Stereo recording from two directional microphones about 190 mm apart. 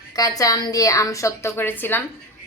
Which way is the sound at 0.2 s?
20° left (ahead or behind).